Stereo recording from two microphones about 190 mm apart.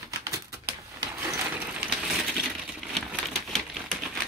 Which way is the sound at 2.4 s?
Centre (ahead or behind).